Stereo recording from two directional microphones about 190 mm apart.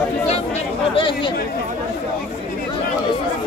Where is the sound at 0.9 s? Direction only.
25° left (ahead or behind).